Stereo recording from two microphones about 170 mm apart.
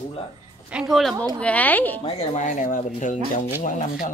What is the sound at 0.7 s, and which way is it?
A woman's voice, 5° right (ahead or behind).